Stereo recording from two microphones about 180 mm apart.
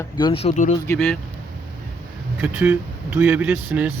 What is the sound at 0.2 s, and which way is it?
Speech, 30° left (ahead or behind).